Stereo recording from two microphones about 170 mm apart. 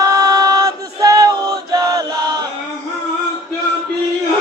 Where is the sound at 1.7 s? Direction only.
20° right (ahead or behind).